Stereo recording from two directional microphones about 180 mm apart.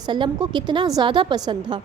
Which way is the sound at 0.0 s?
25° right (ahead or behind).